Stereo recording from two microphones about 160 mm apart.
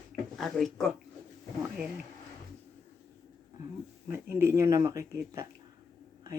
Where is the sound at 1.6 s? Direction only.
10° right (ahead or behind).